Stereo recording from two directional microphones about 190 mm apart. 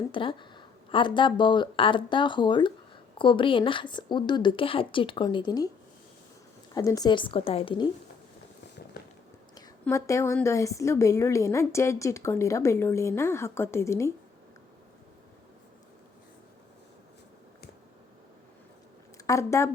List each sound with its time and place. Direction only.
0.1 s speech: 25° left (ahead or behind)
6.7 s speech: 20° left (ahead or behind)
9.8 s a woman's voice: 15° left (ahead or behind)
19.1 s a woman's voice: 15° left (ahead or behind)